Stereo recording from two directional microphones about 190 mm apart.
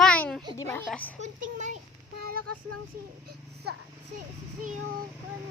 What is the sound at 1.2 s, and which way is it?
Speech, 40° right (ahead or behind).